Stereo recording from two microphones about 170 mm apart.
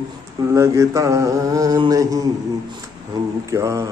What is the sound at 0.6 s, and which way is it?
Mantra, 20° right (ahead or behind).